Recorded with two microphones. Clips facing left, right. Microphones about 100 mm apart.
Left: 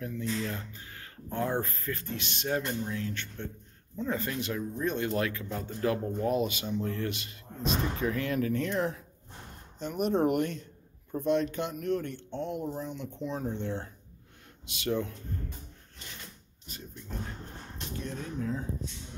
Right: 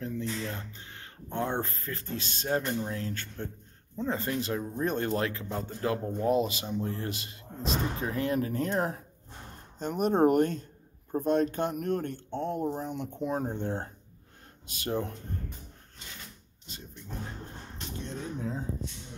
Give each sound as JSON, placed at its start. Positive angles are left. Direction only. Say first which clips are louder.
{"t": 0.0, "sound": "speech", "louder": "left 1 dB", "side_deg": -25}